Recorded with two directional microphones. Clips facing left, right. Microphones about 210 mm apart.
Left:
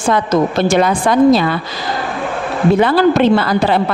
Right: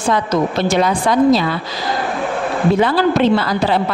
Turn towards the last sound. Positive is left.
turn(degrees=60)  # may be behind; listen again after turning